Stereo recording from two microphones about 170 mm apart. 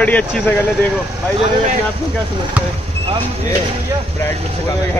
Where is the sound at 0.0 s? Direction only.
10° left (ahead or behind).